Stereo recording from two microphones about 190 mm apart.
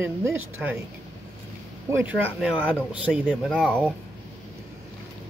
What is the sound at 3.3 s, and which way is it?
Speech, 5° left (ahead or behind).